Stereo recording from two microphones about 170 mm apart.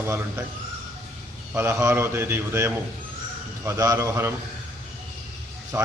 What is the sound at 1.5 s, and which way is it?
A man's voice, 15° right (ahead or behind).